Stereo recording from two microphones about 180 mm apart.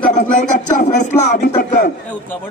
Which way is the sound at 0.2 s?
45° left (ahead or behind).